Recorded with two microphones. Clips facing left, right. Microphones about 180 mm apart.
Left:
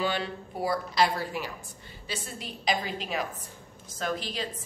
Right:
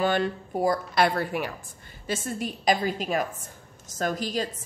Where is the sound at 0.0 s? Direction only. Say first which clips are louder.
Right 5 dB; 50° right (ahead or behind).